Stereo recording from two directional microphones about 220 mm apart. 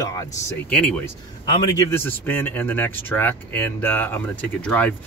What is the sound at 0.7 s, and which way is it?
Speech, 5° left (ahead or behind).